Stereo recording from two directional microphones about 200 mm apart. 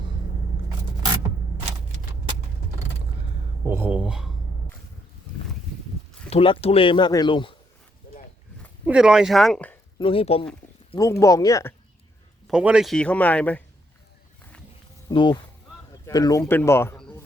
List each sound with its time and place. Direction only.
3.7 s speech: 10° right (ahead or behind)
6.3 s speech: 30° left (ahead or behind)
8.9 s speech: 5° right (ahead or behind)
10.0 s speech: 25° left (ahead or behind)
10.9 s speech: 15° left (ahead or behind)
12.5 s speech: 5° right (ahead or behind)
15.1 s speech: 25° left (ahead or behind)